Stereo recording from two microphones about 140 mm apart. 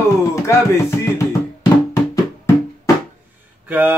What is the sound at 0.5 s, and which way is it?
Speech, 20° left (ahead or behind).